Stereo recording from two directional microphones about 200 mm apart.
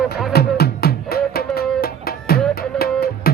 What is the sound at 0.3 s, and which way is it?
Music, 50° left (ahead or behind).